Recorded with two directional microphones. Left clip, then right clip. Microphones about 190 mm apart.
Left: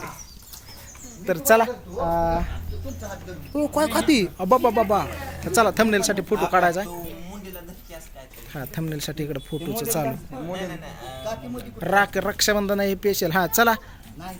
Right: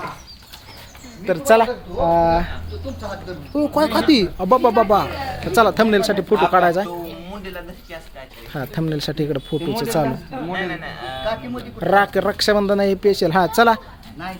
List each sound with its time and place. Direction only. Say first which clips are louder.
1.3 s speech: right 4 dB; 10° left (ahead or behind)
2.0 s speech: right 7 dB; 15° right (ahead or behind)
3.5 s speech: right 4 dB; 5° left (ahead or behind)
8.5 s speech: right 7 dB; 20° right (ahead or behind)
11.5 s speech: right 4 dB; 15° right (ahead or behind)